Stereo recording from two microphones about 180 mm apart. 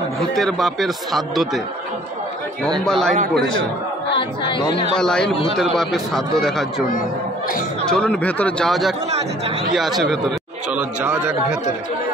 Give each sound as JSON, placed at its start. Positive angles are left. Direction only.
{"t": 0.4, "sound": "speech", "side_deg": 0}
{"t": 2.8, "sound": "speech", "side_deg": 5}
{"t": 4.2, "sound": "speech", "side_deg": 25}
{"t": 4.9, "sound": "speech", "side_deg": 5}
{"t": 7.9, "sound": "a man's voice", "side_deg": 5}